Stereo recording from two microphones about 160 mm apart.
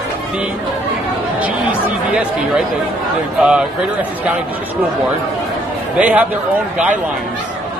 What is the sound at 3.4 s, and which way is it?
Speech, 5° right (ahead or behind).